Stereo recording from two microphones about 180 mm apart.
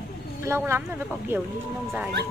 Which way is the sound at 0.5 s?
15° right (ahead or behind).